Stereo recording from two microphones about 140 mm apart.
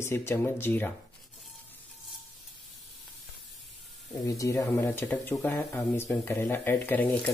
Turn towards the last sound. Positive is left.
turn(degrees=10)  # may be behind; listen again after turning